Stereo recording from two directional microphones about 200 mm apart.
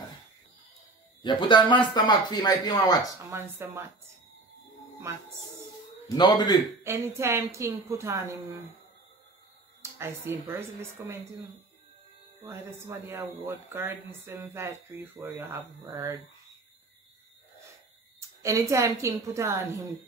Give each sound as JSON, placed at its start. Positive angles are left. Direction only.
{"t": 1.2, "sound": "speech", "side_deg": 25}
{"t": 3.3, "sound": "speech", "side_deg": -15}
{"t": 5.1, "sound": "speech", "side_deg": -15}
{"t": 6.0, "sound": "speech", "side_deg": 20}
{"t": 6.8, "sound": "speech", "side_deg": -15}
{"t": 9.9, "sound": "speech", "side_deg": -10}
{"t": 12.4, "sound": "speech", "side_deg": -10}
{"t": 18.4, "sound": "speech", "side_deg": -15}